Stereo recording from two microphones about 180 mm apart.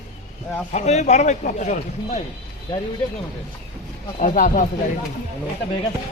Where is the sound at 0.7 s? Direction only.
40° left (ahead or behind).